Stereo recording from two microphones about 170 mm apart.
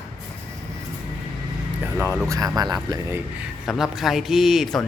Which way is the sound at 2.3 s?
20° right (ahead or behind).